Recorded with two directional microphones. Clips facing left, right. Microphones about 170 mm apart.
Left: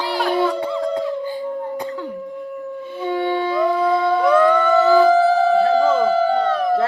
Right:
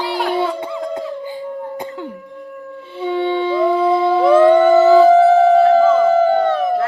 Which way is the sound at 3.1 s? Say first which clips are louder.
Right 3 dB; 25° right (ahead or behind).